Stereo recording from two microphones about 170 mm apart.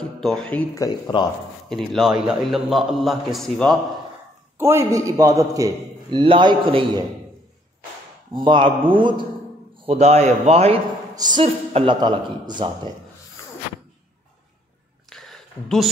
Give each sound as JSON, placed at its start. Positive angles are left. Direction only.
{"t": 0.2, "sound": "speech", "side_deg": 5}
{"t": 0.8, "sound": "speech", "side_deg": 25}
{"t": 1.7, "sound": "a man's voice", "side_deg": 0}
{"t": 4.6, "sound": "a man's voice", "side_deg": -15}
{"t": 8.3, "sound": "a man's voice", "side_deg": -30}
{"t": 11.1, "sound": "a man's voice", "side_deg": -25}
{"t": 15.0, "sound": "a sound", "side_deg": 5}